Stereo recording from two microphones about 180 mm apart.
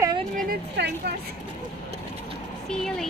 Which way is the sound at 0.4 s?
65° right (ahead or behind).